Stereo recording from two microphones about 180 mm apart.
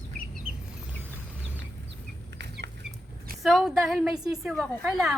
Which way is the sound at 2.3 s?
70° right (ahead or behind).